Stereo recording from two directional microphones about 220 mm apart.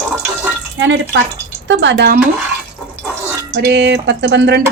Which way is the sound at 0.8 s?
55° right (ahead or behind).